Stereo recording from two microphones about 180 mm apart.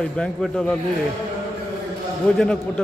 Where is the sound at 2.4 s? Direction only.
5° left (ahead or behind).